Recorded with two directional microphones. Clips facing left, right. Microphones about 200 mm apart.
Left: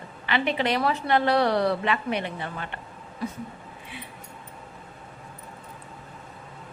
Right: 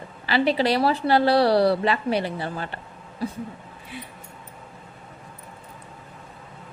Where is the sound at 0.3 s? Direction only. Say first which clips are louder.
Right 4 dB; 35° right (ahead or behind).